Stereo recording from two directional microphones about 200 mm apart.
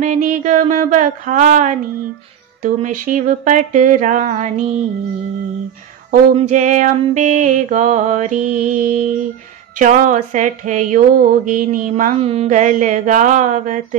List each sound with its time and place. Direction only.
0.0 s mantra: 40° right (ahead or behind)
6.3 s mantra: 35° right (ahead or behind)